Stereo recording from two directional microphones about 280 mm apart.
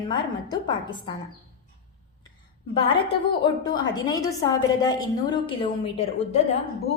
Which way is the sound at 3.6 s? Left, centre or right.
Centre.